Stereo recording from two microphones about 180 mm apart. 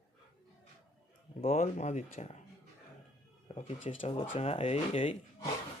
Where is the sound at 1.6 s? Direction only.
40° left (ahead or behind).